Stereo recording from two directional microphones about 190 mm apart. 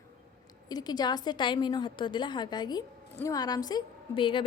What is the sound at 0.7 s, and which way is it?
A woman's voice, 20° left (ahead or behind).